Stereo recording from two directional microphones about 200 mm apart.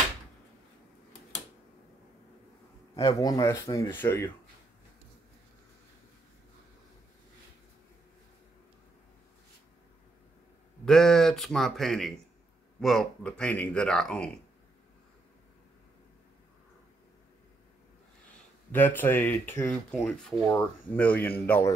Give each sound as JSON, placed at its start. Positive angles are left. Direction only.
{"t": 3.1, "sound": "speech", "side_deg": 20}
{"t": 10.9, "sound": "speech", "side_deg": 0}
{"t": 18.7, "sound": "speech", "side_deg": 10}